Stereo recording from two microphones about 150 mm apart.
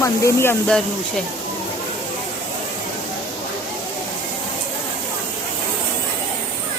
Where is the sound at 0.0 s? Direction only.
20° left (ahead or behind).